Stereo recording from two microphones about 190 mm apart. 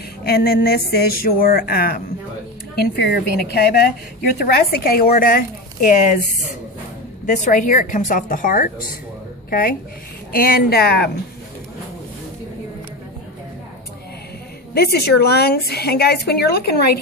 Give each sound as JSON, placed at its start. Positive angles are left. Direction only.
{"t": 0.2, "sound": "a woman's voice", "side_deg": 55}
{"t": 14.7, "sound": "a woman's voice", "side_deg": 55}